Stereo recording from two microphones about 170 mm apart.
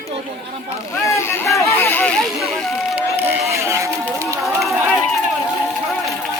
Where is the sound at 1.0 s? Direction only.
15° left (ahead or behind); by 3.0 s centre (ahead or behind).